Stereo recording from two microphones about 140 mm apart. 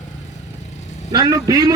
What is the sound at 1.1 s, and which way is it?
Speech, 25° right (ahead or behind).